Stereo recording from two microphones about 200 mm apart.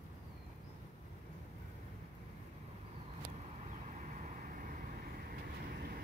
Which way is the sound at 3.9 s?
40° right (ahead or behind).